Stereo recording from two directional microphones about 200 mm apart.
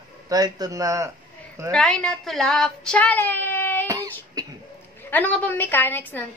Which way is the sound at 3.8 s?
15° right (ahead or behind).